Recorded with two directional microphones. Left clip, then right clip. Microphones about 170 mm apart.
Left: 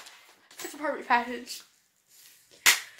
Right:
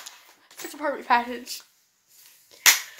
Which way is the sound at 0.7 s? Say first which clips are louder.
Right 4 dB; 20° right (ahead or behind).